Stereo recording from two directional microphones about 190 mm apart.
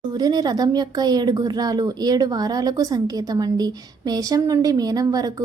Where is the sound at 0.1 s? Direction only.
20° right (ahead or behind).